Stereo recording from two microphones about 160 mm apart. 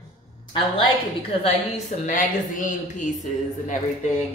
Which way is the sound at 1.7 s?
50° left (ahead or behind).